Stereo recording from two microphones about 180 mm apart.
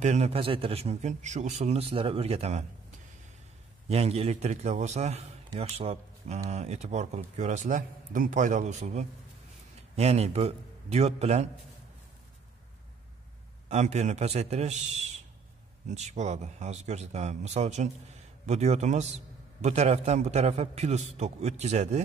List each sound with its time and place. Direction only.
0.0 s a man's voice: 40° right (ahead or behind)
3.9 s a man's voice: 35° right (ahead or behind)
13.7 s a man's voice: 40° right (ahead or behind)
15.9 s a man's voice: 40° right (ahead or behind)